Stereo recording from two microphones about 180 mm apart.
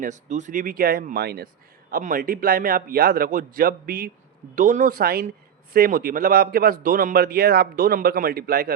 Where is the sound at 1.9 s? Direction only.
50° right (ahead or behind).